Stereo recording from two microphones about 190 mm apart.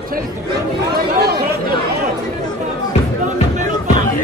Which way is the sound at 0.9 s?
55° right (ahead or behind).